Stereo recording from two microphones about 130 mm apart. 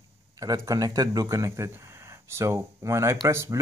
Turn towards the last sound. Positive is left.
turn(degrees=-20)  # may be behind; listen again after turning